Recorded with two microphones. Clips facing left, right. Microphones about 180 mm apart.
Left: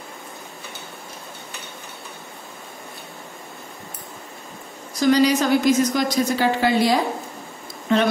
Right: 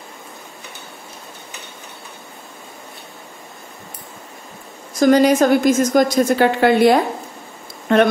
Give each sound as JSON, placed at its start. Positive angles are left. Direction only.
{"t": 4.9, "sound": "a woman's voice", "side_deg": -50}